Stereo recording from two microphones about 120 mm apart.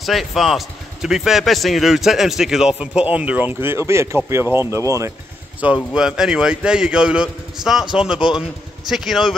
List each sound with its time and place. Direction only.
0.0 s speech: centre (ahead or behind); by 5.1 s 25° right (ahead or behind)
5.6 s a man's voice: 10° right (ahead or behind)